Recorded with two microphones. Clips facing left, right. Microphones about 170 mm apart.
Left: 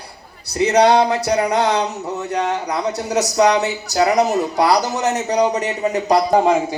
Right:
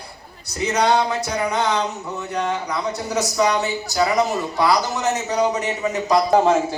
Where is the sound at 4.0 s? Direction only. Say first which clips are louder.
Left 4 dB; 40° left (ahead or behind).